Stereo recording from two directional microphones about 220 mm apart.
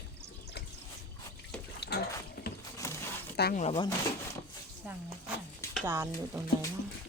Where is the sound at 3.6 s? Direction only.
25° left (ahead or behind).